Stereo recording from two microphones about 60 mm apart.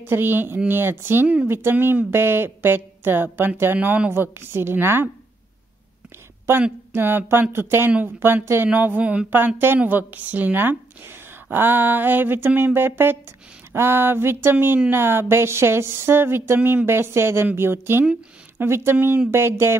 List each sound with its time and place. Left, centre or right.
0.0 s a woman's voice: right
1.2 s a woman's voice: right
1.5 s a woman's voice: right
6.9 s a woman's voice: right
8.7 s a woman's voice: right